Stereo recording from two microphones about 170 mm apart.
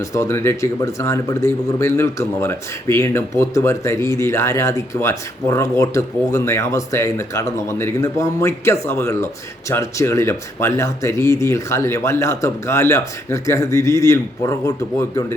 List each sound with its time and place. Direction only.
0.1 s speech: 15° left (ahead or behind)